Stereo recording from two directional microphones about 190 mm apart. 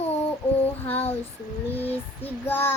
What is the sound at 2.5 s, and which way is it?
Child singing, 10° left (ahead or behind).